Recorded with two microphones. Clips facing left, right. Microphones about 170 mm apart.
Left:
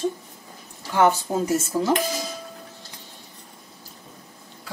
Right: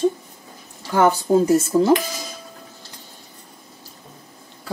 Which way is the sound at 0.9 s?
40° right (ahead or behind).